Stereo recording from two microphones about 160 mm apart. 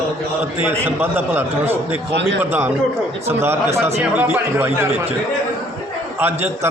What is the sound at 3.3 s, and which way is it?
A man's voice, 15° right (ahead or behind).